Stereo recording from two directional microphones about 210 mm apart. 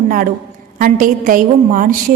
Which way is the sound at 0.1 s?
40° right (ahead or behind).